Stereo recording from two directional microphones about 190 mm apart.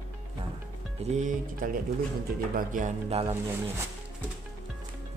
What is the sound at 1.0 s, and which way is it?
Speech, 40° right (ahead or behind).